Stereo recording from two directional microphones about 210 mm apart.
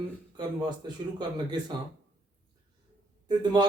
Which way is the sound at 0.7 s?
20° right (ahead or behind).